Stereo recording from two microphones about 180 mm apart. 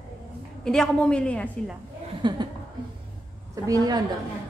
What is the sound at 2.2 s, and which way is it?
Speech, 25° right (ahead or behind).